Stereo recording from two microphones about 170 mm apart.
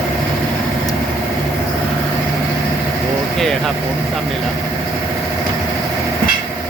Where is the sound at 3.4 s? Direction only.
Centre (ahead or behind).